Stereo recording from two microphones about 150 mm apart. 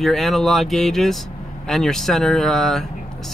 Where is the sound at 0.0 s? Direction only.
Centre (ahead or behind).